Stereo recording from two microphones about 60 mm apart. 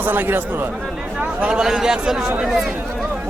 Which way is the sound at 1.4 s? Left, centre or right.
Centre.